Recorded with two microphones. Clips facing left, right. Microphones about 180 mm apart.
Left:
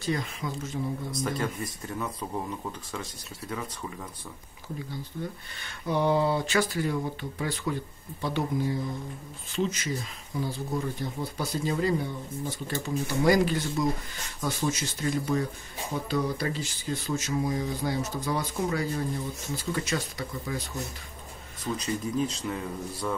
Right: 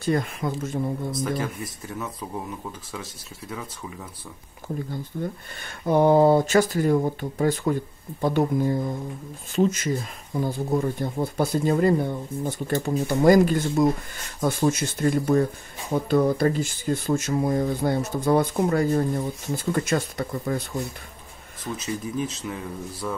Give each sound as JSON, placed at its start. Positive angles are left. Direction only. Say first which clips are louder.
{"t": 0.0, "sound": "speech", "louder": "right 6 dB", "side_deg": -55}
{"t": 1.1, "sound": "speech", "louder": "right 3 dB", "side_deg": 0}
{"t": 4.7, "sound": "speech", "louder": "right 5 dB", "side_deg": -50}
{"t": 21.7, "sound": "speech", "louder": "even", "side_deg": -5}